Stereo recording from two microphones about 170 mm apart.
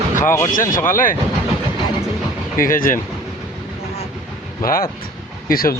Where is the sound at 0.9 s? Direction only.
55° left (ahead or behind).